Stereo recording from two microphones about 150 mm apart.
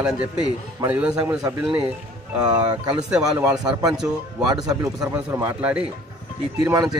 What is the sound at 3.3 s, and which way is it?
Speech, 25° right (ahead or behind).